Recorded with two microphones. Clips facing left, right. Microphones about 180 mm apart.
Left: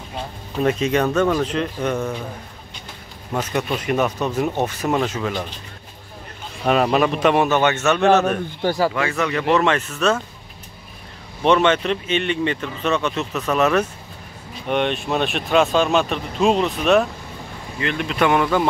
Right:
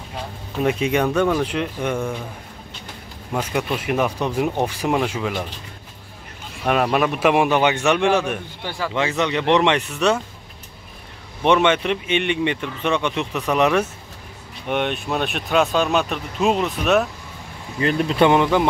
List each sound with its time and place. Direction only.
0.6 s speech: 10° right (ahead or behind)
3.3 s speech: 10° right (ahead or behind)
6.6 s speech: 5° right (ahead or behind)
8.6 s speech: 40° left (ahead or behind)
8.9 s speech: 20° right (ahead or behind)
11.4 s speech: 10° right (ahead or behind)
17.7 s speech: 35° right (ahead or behind); by 18.7 s 20° right (ahead or behind)